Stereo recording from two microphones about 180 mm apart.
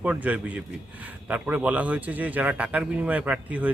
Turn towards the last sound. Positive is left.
turn(degrees=-10)  # may be behind; listen again after turning